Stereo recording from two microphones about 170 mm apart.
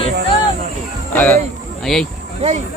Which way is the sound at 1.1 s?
10° left (ahead or behind).